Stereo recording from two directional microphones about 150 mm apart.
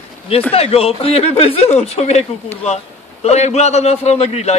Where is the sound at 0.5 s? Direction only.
40° left (ahead or behind).